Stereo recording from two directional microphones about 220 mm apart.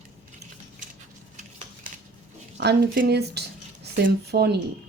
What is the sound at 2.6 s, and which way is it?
Speech, 50° right (ahead or behind).